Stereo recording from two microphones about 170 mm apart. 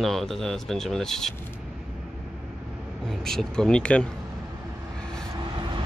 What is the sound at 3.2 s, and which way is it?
Speech, centre (ahead or behind).